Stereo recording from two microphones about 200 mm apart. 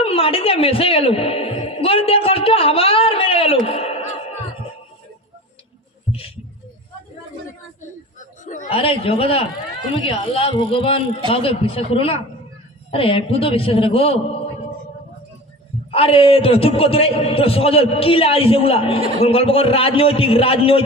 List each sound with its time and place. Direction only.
0.0 s speech: 30° left (ahead or behind)
6.1 s a sound: 30° left (ahead or behind)
8.2 s a man's voice: 40° left (ahead or behind)
15.9 s a man's voice: 30° left (ahead or behind)